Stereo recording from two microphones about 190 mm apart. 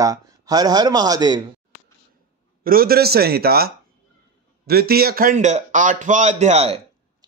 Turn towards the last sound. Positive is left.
turn(degrees=-35)  # may be behind; listen again after turning